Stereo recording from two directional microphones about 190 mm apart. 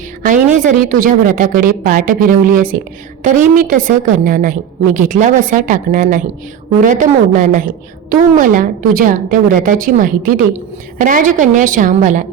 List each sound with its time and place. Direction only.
0.2 s a woman's voice: 45° right (ahead or behind)